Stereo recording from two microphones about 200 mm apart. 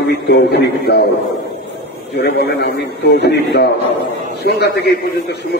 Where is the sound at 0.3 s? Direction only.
55° left (ahead or behind).